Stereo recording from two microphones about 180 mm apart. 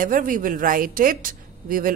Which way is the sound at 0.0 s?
50° right (ahead or behind).